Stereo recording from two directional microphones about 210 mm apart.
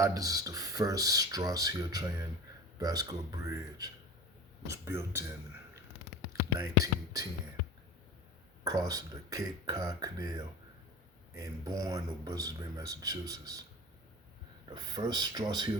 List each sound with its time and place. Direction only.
0.0 s speech: 15° right (ahead or behind)
6.6 s speech: 15° right (ahead or behind)
8.6 s speech: 15° right (ahead or behind)
14.7 s speech: 20° right (ahead or behind)